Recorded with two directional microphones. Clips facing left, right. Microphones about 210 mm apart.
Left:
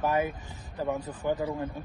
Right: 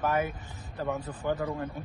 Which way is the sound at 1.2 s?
10° left (ahead or behind).